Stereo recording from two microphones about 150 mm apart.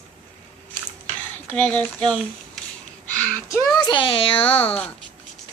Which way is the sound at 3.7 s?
30° left (ahead or behind).